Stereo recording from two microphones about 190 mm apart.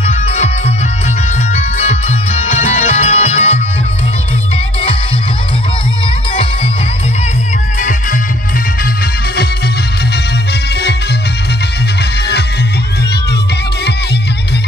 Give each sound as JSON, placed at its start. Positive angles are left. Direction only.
{"t": 0.0, "sound": "music", "side_deg": 35}